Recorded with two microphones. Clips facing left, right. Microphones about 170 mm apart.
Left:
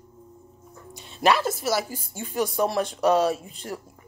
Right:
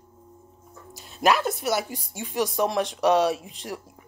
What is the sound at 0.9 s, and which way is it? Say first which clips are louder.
Speech: even; centre (ahead or behind).